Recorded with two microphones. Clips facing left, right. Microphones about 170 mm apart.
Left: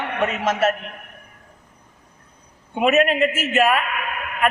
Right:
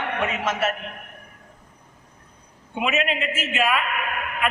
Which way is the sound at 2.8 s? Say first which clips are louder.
Left 8 dB; 45° left (ahead or behind).